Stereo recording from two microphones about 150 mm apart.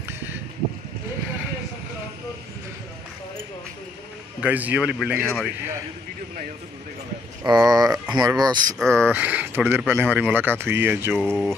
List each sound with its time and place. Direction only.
4.4 s speech: 10° right (ahead or behind)
7.4 s speech: 25° right (ahead or behind)
8.7 s speech: 5° left (ahead or behind)
9.1 s speech: 10° right (ahead or behind)
11.1 s speech: 5° left (ahead or behind)